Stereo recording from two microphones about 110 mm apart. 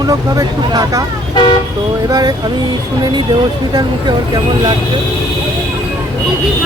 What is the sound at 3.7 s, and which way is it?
Speech, 40° right (ahead or behind).